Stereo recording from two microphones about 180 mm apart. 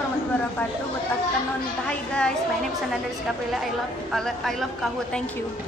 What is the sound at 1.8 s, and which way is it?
Speech, 5° left (ahead or behind).